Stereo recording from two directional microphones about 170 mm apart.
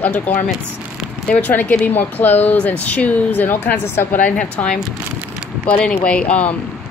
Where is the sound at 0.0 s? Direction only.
10° left (ahead or behind).